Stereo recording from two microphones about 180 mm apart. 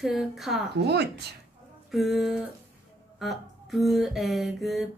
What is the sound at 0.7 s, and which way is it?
Speech, 65° right (ahead or behind).